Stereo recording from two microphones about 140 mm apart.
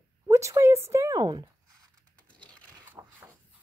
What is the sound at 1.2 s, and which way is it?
Speech, 30° right (ahead or behind).